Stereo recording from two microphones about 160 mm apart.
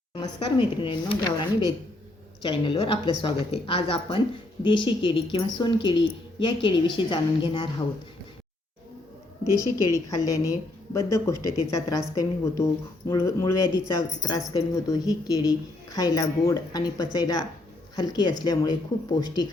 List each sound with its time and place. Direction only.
0.1 s a woman's voice: 25° left (ahead or behind)
9.7 s speech: 20° left (ahead or behind)